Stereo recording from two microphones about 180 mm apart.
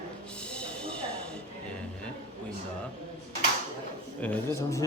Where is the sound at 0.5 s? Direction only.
5° left (ahead or behind).